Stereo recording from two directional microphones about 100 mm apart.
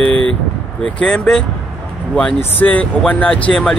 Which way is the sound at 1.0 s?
10° left (ahead or behind).